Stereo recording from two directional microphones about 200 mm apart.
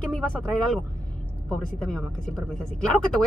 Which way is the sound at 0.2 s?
5° left (ahead or behind).